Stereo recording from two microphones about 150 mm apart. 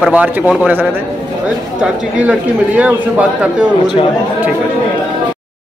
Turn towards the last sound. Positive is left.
turn(degrees=-10)  # may be behind; listen again after turning